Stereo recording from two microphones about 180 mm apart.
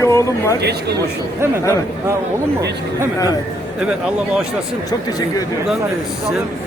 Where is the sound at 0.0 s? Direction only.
15° left (ahead or behind).